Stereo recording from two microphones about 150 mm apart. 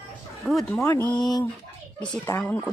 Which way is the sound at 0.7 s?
15° left (ahead or behind).